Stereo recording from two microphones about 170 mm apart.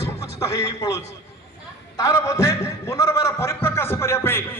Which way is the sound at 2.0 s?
20° left (ahead or behind).